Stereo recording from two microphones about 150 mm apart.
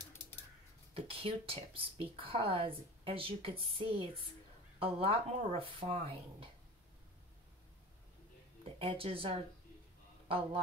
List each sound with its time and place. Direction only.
0.9 s speech: 35° right (ahead or behind)
8.6 s speech: 35° right (ahead or behind)